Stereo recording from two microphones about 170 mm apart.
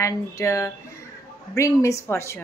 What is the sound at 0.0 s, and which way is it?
A woman's voice, 15° left (ahead or behind).